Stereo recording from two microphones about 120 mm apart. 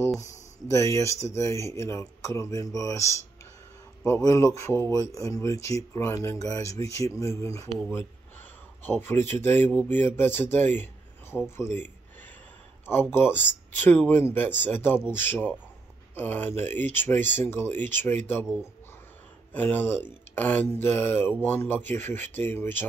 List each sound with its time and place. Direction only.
0.7 s speech: 25° left (ahead or behind)
8.8 s speech: 20° left (ahead or behind)
13.1 s speech: 20° left (ahead or behind)
19.5 s speech: 15° left (ahead or behind)